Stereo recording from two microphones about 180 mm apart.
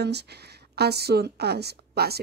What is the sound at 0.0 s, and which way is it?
A woman's voice, 65° right (ahead or behind).